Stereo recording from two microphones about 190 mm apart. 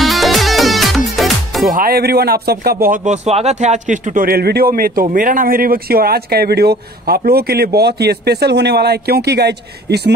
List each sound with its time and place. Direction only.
0.0 s music: centre (ahead or behind)
1.6 s a man's voice: 45° right (ahead or behind)
3.3 s a man's voice: 35° right (ahead or behind); by 10.1 s 60° right (ahead or behind)